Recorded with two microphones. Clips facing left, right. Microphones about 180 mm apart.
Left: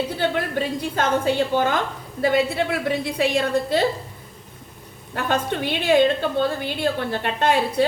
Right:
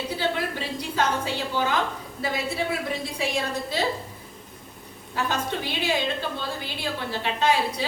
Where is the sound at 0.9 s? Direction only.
50° left (ahead or behind).